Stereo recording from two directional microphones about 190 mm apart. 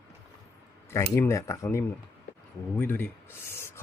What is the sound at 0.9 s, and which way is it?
Speech, 15° left (ahead or behind).